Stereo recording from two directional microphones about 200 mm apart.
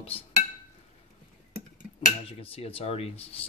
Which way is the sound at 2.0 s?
30° left (ahead or behind).